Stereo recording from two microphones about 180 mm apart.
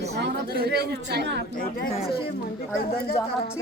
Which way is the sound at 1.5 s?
50° left (ahead or behind).